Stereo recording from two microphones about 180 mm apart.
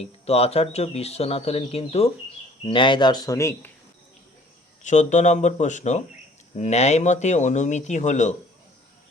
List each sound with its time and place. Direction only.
0.0 s speech: 35° left (ahead or behind); by 3.7 s 15° left (ahead or behind)
4.8 s speech: 40° left (ahead or behind)